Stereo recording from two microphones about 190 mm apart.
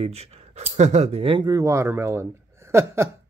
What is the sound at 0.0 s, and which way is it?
Speech, 35° right (ahead or behind).